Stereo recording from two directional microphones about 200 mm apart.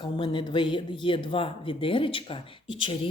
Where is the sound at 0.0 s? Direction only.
25° left (ahead or behind).